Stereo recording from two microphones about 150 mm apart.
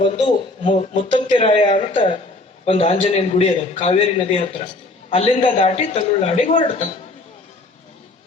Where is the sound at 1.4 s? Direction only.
35° left (ahead or behind).